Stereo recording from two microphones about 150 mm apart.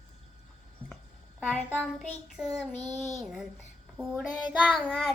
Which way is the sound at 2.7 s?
50° left (ahead or behind).